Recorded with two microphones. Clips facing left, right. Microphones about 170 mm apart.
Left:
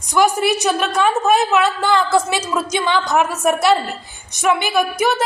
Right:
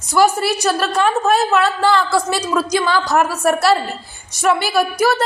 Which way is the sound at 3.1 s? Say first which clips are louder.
Right 1 dB; centre (ahead or behind).